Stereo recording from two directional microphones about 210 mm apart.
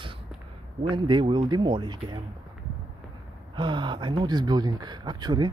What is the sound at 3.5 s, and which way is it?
Speech, 20° right (ahead or behind).